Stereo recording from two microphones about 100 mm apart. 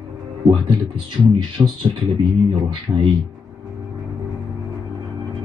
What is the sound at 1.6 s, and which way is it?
Speech, 35° right (ahead or behind).